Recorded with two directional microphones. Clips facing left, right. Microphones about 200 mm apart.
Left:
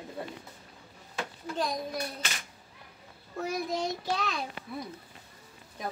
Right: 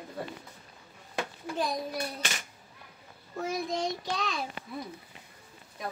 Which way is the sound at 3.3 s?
Centre (ahead or behind).